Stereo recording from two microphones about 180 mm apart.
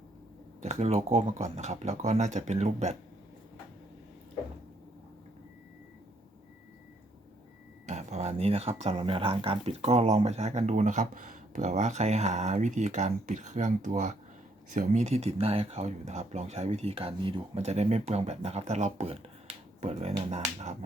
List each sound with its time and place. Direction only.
0.6 s speech: 35° right (ahead or behind)
7.9 s speech: 40° right (ahead or behind)